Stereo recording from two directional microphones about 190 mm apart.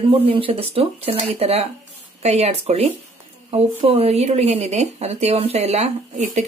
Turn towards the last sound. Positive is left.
turn(degrees=-35)  # may be behind; listen again after turning